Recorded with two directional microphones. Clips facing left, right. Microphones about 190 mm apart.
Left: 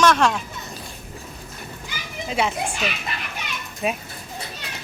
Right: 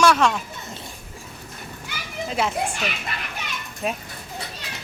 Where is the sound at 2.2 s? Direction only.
Centre (ahead or behind).